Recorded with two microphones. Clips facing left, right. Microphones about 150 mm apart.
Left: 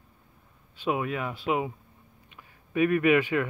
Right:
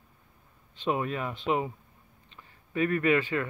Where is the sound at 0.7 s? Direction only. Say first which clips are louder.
Left 1 dB; 5° left (ahead or behind).